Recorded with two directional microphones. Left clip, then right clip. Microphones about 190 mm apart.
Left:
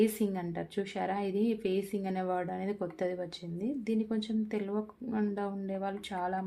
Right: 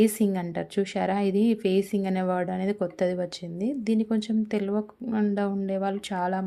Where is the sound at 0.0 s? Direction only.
35° right (ahead or behind).